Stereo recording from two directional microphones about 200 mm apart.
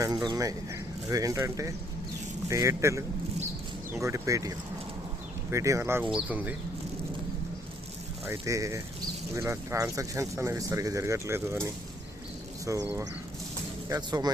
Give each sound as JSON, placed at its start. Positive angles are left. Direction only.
{"t": 0.0, "sound": "speech", "side_deg": -20}
{"t": 8.2, "sound": "speech", "side_deg": -15}
{"t": 13.9, "sound": "speech", "side_deg": -20}